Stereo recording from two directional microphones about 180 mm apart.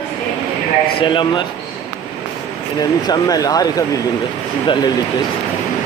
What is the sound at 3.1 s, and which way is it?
Speech, 20° left (ahead or behind).